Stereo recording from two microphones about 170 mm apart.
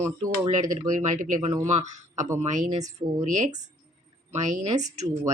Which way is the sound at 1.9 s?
45° right (ahead or behind).